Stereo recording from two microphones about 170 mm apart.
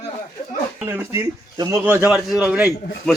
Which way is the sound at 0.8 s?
15° right (ahead or behind).